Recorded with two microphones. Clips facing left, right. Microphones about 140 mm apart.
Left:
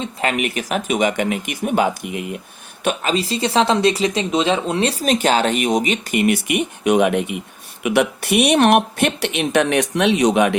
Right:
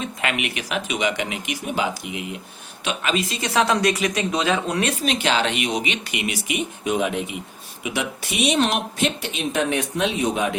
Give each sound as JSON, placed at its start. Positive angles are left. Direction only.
{"t": 0.0, "sound": "speech", "side_deg": 35}
{"t": 3.0, "sound": "speech", "side_deg": 35}